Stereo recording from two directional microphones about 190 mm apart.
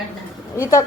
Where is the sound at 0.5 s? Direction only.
15° left (ahead or behind).